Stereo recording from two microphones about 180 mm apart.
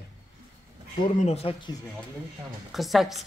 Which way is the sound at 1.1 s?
35° left (ahead or behind).